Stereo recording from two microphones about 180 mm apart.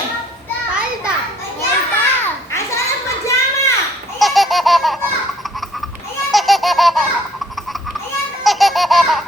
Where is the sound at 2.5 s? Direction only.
15° left (ahead or behind).